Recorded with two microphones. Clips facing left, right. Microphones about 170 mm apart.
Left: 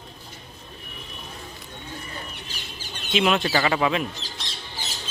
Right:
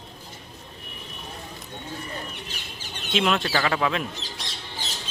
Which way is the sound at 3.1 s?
5° left (ahead or behind).